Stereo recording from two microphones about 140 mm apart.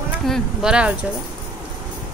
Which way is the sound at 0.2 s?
Centre (ahead or behind).